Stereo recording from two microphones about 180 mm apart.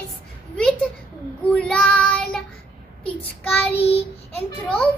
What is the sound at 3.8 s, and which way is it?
Child singing, 35° left (ahead or behind).